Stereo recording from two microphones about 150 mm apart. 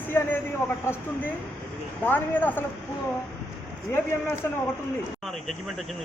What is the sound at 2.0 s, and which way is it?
Speech, 10° left (ahead or behind).